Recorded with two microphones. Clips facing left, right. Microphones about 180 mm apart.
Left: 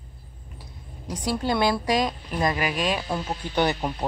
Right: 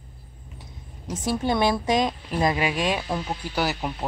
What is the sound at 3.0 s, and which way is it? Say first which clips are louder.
Speech: even; 5° right (ahead or behind).